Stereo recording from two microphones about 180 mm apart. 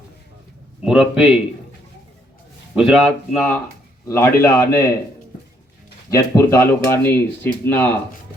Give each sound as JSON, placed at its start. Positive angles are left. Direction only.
{"t": 0.9, "sound": "speech", "side_deg": -5}
{"t": 2.7, "sound": "speech", "side_deg": 0}
{"t": 6.1, "sound": "speech", "side_deg": 15}